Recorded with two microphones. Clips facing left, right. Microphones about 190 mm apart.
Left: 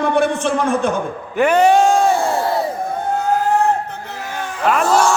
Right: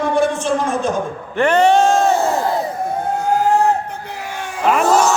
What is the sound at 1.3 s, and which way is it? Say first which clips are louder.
Music: even; 10° left (ahead or behind).